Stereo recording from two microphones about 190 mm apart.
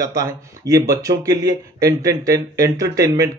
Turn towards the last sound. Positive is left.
turn(degrees=-20)  # may be behind; listen again after turning